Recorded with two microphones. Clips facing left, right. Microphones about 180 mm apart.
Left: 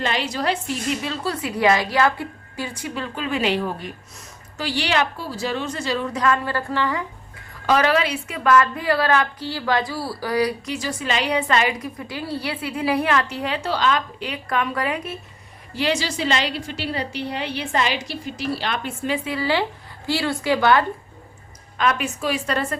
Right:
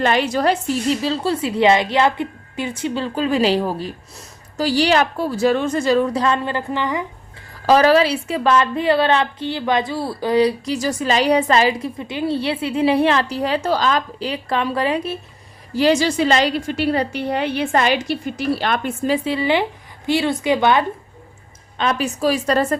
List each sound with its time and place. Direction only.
0.0 s a woman's voice: 50° right (ahead or behind)
0.9 s a woman's voice: 30° right (ahead or behind); by 6.1 s 45° right (ahead or behind)
6.1 s a woman's voice: 25° right (ahead or behind)
7.7 s a woman's voice: 35° right (ahead or behind)
10.8 s a woman's voice: 40° right (ahead or behind)
15.7 s a woman's voice: 45° right (ahead or behind)
19.1 s a woman's voice: 30° right (ahead or behind)
21.8 s a woman's voice: 30° right (ahead or behind)